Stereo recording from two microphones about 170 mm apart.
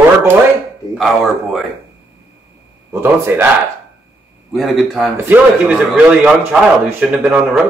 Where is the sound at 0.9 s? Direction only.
Centre (ahead or behind).